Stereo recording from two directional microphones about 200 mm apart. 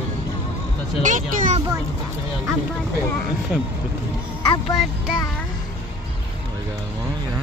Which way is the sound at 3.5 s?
5° right (ahead or behind).